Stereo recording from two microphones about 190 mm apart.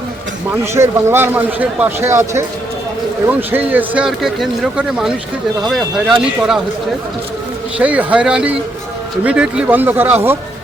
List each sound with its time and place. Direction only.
0.5 s a man's voice: 15° right (ahead or behind)
3.5 s speech: 10° right (ahead or behind)
7.8 s a man's voice: 5° right (ahead or behind)